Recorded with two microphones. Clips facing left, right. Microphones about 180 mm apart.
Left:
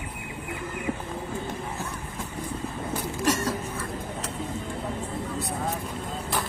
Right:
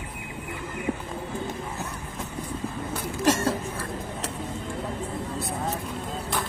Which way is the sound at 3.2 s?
25° right (ahead or behind).